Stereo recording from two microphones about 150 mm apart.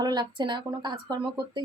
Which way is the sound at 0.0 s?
30° right (ahead or behind).